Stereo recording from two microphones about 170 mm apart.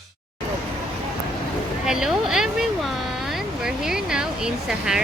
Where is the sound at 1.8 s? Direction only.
5° right (ahead or behind).